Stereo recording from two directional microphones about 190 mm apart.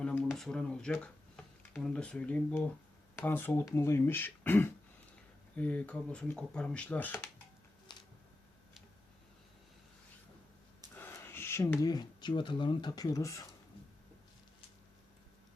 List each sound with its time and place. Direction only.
0.0 s speech: 5° left (ahead or behind)
7.9 s a sound: 25° left (ahead or behind)
10.9 s speech: 10° left (ahead or behind)